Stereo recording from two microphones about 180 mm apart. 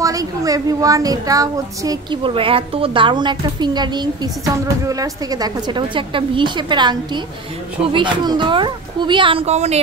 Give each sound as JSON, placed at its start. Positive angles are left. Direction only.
{"t": 0.0, "sound": "a child's voice", "side_deg": -20}